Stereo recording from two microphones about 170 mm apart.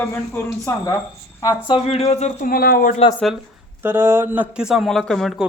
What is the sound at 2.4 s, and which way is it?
Speech, 60° left (ahead or behind).